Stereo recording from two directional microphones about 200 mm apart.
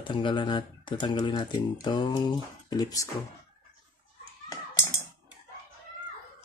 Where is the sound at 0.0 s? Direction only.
25° left (ahead or behind).